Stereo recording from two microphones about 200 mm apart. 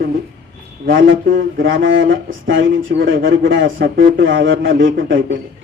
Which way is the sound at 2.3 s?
70° right (ahead or behind).